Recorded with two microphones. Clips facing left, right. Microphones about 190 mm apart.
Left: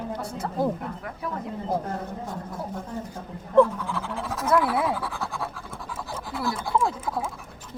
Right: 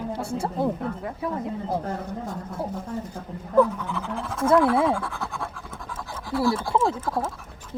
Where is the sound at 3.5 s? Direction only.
5° right (ahead or behind).